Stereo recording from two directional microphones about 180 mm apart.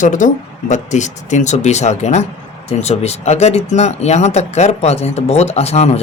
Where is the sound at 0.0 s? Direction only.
45° left (ahead or behind).